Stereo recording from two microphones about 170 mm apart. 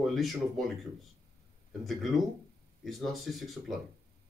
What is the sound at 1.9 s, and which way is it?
Speech, centre (ahead or behind).